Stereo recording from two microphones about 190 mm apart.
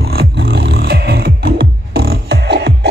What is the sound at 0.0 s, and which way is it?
Music, 55° right (ahead or behind).